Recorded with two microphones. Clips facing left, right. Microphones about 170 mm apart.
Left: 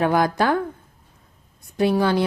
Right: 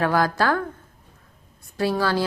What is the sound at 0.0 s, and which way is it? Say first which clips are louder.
Speech: left 2 dB; 20° left (ahead or behind).